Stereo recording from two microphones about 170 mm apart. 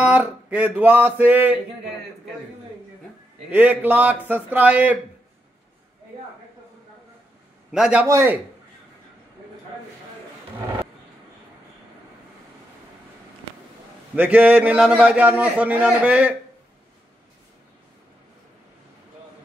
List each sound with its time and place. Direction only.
0.0 s a man's voice: 10° right (ahead or behind)
3.4 s a man's voice: 10° right (ahead or behind)
7.7 s a man's voice: 5° right (ahead or behind)
8.1 s a man's voice: 15° right (ahead or behind)
14.1 s a man's voice: 10° right (ahead or behind)